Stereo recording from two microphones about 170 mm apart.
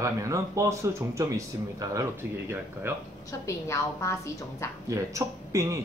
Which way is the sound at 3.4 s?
15° left (ahead or behind).